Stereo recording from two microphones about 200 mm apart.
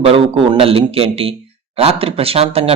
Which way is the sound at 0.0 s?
30° right (ahead or behind).